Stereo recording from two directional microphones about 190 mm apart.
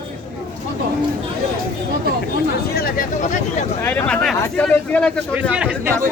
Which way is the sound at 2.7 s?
50° left (ahead or behind).